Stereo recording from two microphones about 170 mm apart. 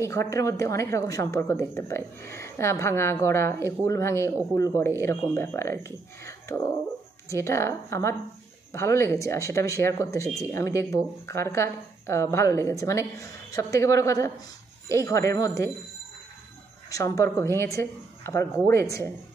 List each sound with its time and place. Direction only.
0.0 s speech: 15° left (ahead or behind)
16.9 s speech: 20° left (ahead or behind)